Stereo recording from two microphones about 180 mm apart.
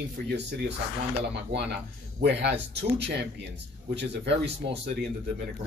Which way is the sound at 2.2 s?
70° right (ahead or behind).